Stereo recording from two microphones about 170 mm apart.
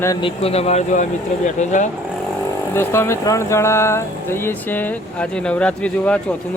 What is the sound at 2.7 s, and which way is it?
Speech, 15° left (ahead or behind).